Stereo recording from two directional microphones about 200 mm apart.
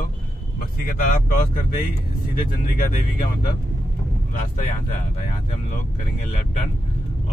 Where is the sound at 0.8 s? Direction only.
40° left (ahead or behind).